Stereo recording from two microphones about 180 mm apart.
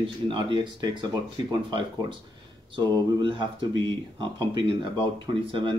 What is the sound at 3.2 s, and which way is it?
Speech, 25° right (ahead or behind).